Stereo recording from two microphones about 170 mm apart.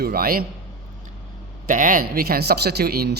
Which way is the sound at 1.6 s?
55° right (ahead or behind).